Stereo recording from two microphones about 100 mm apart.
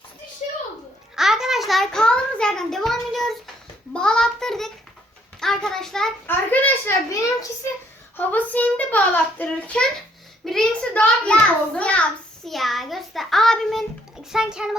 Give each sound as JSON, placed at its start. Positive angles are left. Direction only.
{"t": 1.1, "sound": "a child's voice", "side_deg": -5}
{"t": 6.2, "sound": "a child's voice", "side_deg": 20}
{"t": 7.1, "sound": "a child's voice", "side_deg": 35}
{"t": 8.1, "sound": "a child's voice", "side_deg": 20}
{"t": 12.5, "sound": "child singing", "side_deg": 0}
{"t": 14.3, "sound": "a child's voice", "side_deg": -5}